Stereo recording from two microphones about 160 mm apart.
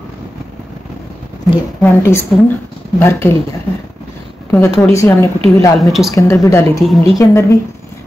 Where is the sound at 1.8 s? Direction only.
15° left (ahead or behind).